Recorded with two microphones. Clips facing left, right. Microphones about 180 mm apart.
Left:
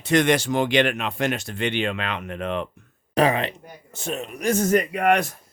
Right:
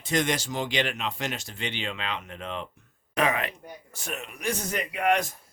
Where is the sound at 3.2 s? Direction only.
30° left (ahead or behind); by 5.3 s 60° left (ahead or behind).